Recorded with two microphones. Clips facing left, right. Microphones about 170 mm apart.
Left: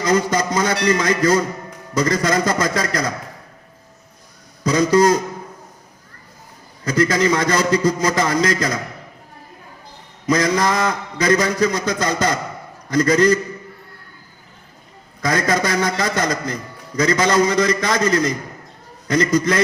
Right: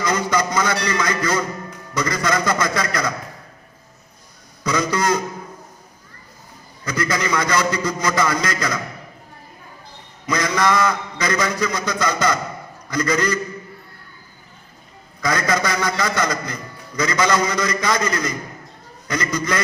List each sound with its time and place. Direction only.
0.0 s a man's voice: 40° left (ahead or behind)
4.6 s a man's voice: 40° left (ahead or behind)
6.8 s a man's voice: 40° left (ahead or behind)
10.2 s a man's voice: 40° left (ahead or behind)
15.2 s a man's voice: 40° left (ahead or behind)